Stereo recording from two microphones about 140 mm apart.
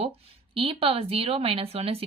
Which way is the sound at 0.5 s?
40° right (ahead or behind).